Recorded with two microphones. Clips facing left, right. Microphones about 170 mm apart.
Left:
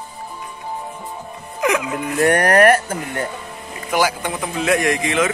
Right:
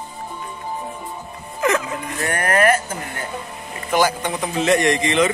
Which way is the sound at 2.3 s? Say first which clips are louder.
Left 2 dB; 65° left (ahead or behind).